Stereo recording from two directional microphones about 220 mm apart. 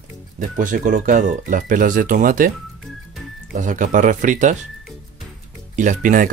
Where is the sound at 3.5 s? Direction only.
35° right (ahead or behind).